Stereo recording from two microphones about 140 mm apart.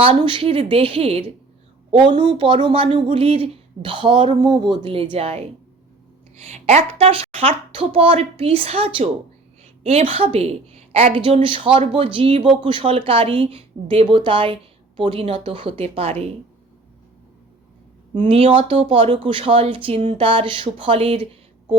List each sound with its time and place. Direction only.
0.0 s a woman's voice: 40° right (ahead or behind)
6.5 s a woman's voice: 55° right (ahead or behind)
18.2 s a woman's voice: 40° right (ahead or behind)
20.2 s a woman's voice: 40° right (ahead or behind)